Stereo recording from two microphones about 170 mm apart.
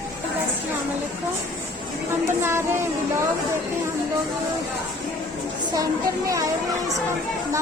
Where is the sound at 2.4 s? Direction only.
15° right (ahead or behind).